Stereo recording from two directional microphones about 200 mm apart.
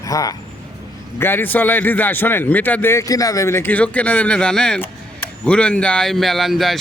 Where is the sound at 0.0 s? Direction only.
15° left (ahead or behind).